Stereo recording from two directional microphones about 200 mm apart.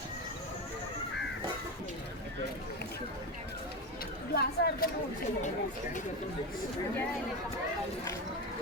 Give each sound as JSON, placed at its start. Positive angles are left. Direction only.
{"t": 4.4, "sound": "a woman's voice", "side_deg": 50}